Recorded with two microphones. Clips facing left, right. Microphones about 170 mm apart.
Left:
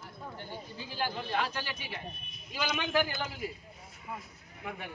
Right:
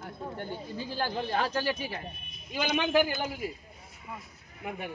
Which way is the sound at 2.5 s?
25° right (ahead or behind).